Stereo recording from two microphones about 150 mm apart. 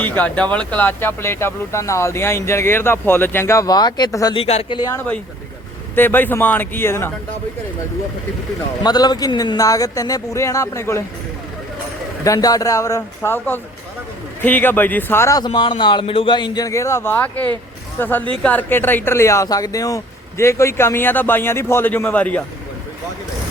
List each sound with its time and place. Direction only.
0.0 s speech: 10° left (ahead or behind)
4.4 s speech: 45° left (ahead or behind)
4.7 s speech: 25° left (ahead or behind)
4.9 s speech: 10° left (ahead or behind)
8.8 s speech: 25° left (ahead or behind)
12.2 s speech: 25° left (ahead or behind)
18.4 s speech: 15° left (ahead or behind)